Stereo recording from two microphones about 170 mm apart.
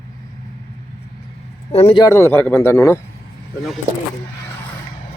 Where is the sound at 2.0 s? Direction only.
15° left (ahead or behind).